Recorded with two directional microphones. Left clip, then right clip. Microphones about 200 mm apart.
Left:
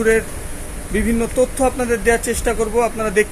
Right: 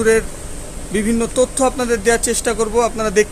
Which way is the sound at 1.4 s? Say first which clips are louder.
Right 1 dB; 20° right (ahead or behind).